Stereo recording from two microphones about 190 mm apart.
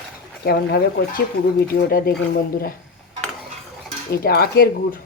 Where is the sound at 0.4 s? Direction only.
55° left (ahead or behind).